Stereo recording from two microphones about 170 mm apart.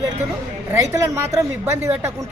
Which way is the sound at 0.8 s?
15° right (ahead or behind).